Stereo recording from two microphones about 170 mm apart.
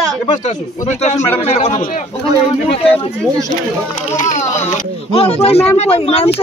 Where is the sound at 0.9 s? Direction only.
40° left (ahead or behind).